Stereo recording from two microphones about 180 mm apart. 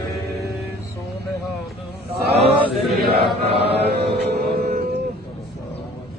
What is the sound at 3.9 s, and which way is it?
Music, 65° right (ahead or behind).